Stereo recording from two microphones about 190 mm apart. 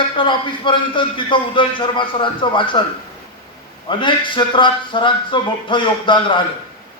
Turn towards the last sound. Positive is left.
turn(degrees=25)  # may be behind; listen again after turning